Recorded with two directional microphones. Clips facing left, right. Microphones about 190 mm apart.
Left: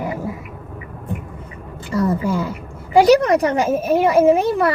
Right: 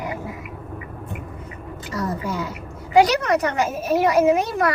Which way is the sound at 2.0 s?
30° left (ahead or behind).